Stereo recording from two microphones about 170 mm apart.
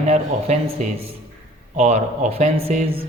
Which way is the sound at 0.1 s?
40° right (ahead or behind).